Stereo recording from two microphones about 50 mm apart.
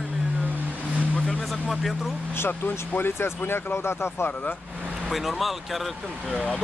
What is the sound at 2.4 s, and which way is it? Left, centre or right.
Speech, left.